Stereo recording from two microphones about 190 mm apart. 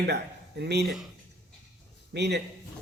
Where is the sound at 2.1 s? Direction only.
65° right (ahead or behind).